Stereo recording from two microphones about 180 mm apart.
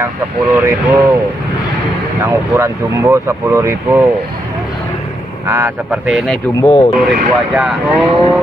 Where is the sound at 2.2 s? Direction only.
15° right (ahead or behind).